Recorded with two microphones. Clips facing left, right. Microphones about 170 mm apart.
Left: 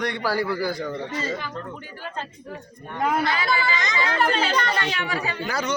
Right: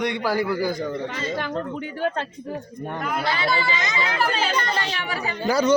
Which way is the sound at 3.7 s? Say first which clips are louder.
Left 1 dB; 10° right (ahead or behind).